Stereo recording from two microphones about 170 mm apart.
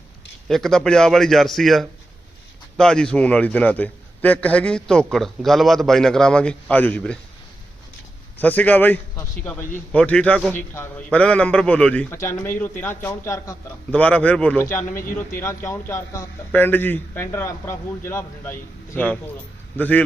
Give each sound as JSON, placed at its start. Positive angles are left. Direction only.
{"t": 0.4, "sound": "a man's voice", "side_deg": 0}
{"t": 8.4, "sound": "a man's voice", "side_deg": 10}
{"t": 13.9, "sound": "a man's voice", "side_deg": 5}